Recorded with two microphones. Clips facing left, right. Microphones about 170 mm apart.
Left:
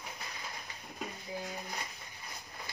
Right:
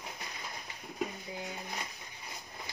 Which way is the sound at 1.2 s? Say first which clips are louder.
Left 1 dB; 20° right (ahead or behind).